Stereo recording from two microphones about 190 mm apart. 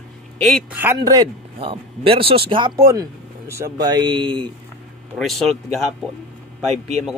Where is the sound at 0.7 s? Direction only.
10° right (ahead or behind).